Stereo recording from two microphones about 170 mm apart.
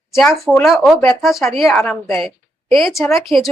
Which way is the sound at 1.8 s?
15° left (ahead or behind).